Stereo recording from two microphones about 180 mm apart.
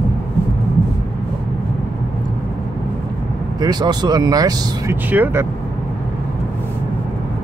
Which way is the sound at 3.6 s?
20° right (ahead or behind).